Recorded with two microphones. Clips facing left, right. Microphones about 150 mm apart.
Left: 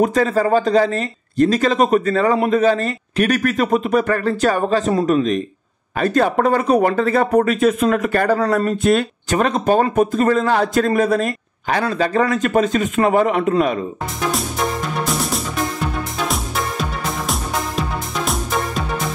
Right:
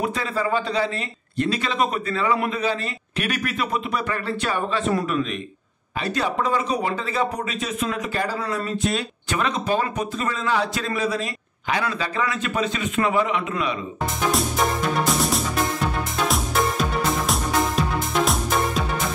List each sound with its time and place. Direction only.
0.0 s speech: 45° left (ahead or behind)
5.9 s speech: 50° left (ahead or behind)
15.0 s music: centre (ahead or behind)